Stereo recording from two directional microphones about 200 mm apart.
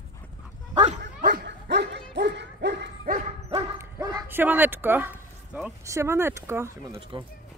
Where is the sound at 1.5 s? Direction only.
60° right (ahead or behind).